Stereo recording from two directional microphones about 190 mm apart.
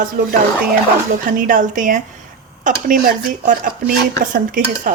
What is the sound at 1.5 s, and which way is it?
Speech, 45° right (ahead or behind).